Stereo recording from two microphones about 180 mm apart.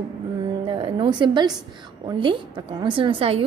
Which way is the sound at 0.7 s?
30° right (ahead or behind).